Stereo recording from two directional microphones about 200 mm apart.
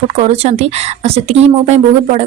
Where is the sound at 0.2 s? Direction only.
35° right (ahead or behind).